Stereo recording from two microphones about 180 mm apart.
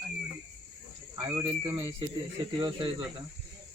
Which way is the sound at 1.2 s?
25° right (ahead or behind).